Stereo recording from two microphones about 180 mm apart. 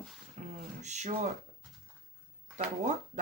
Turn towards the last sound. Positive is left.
turn(degrees=-40)  # may be behind; listen again after turning